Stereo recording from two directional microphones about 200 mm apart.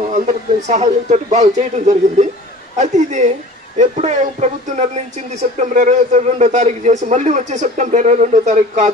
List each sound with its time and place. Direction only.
0.7 s speech: 35° right (ahead or behind)